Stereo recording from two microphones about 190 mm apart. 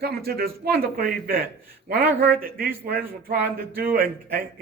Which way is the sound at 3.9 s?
50° right (ahead or behind).